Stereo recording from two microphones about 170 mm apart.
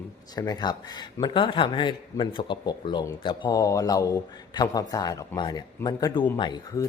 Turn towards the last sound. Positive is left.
turn(degrees=25)  # may be behind; listen again after turning